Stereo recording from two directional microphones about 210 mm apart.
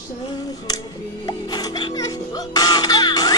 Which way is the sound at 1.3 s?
20° left (ahead or behind).